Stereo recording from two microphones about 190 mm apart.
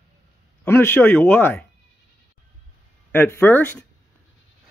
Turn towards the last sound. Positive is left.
turn(degrees=10)  # may be behind; listen again after turning